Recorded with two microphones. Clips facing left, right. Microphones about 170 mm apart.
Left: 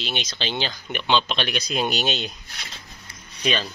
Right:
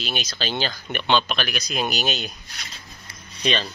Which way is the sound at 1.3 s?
25° left (ahead or behind).